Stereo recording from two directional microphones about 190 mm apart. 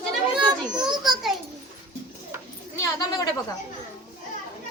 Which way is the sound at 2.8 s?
20° left (ahead or behind).